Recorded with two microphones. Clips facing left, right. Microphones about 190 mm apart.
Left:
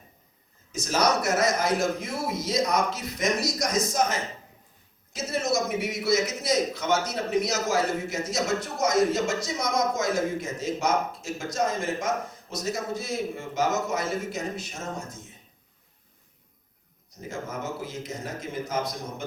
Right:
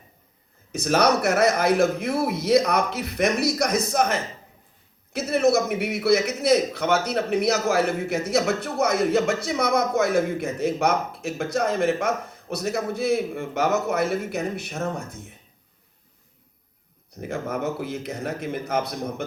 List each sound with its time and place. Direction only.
0.7 s a man's voice: 60° right (ahead or behind)
17.1 s a man's voice: 60° right (ahead or behind)